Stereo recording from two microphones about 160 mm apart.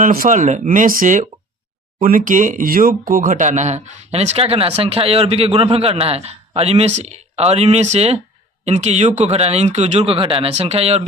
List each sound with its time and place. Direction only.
0.0 s speech: 60° right (ahead or behind); by 11.0 s 40° right (ahead or behind)